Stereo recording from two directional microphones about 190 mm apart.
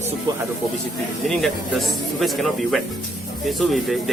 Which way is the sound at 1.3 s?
Centre (ahead or behind).